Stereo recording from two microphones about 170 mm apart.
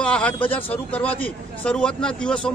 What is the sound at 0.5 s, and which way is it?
A man's voice, 10° left (ahead or behind).